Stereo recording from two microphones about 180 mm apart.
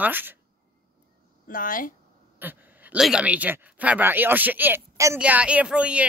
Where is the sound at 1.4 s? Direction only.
50° left (ahead or behind).